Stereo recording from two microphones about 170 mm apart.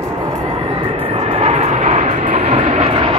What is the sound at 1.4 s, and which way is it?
Vehicle, 40° right (ahead or behind).